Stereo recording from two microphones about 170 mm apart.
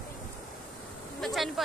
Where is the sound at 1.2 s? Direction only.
Centre (ahead or behind).